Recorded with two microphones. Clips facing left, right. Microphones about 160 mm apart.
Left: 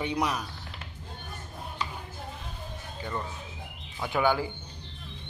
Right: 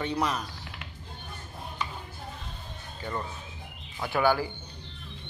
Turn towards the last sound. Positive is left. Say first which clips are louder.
# right 1 dB
turn(degrees=15)  # may be behind; listen again after turning